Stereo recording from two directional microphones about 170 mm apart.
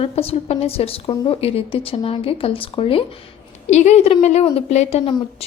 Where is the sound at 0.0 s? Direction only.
35° left (ahead or behind).